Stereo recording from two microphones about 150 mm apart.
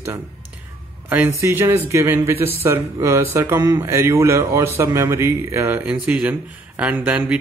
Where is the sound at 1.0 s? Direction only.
15° right (ahead or behind).